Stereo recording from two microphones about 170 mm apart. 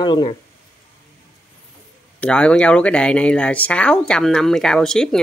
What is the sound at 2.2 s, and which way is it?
Speech, 5° left (ahead or behind).